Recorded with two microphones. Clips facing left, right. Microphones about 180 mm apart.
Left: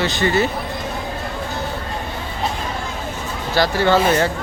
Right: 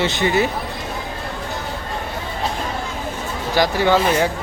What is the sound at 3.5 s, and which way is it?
Speech, 15° right (ahead or behind).